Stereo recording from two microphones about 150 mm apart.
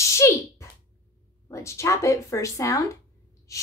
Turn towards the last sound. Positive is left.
turn(degrees=20)  # may be behind; listen again after turning